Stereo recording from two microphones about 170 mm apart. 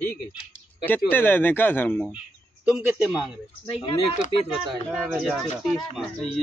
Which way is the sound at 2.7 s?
5° right (ahead or behind).